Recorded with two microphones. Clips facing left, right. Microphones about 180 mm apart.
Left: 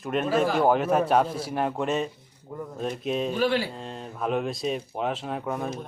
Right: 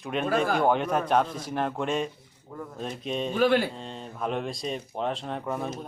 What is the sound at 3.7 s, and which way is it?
Speech, centre (ahead or behind).